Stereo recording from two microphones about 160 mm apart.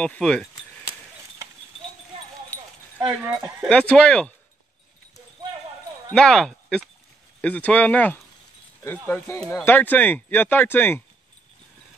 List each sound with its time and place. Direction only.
0.0 s speech: 5° left (ahead or behind)
3.6 s speech: 5° left (ahead or behind)
6.1 s speech: 5° left (ahead or behind)